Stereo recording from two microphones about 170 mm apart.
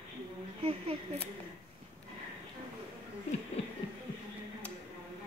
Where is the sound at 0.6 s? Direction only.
35° right (ahead or behind).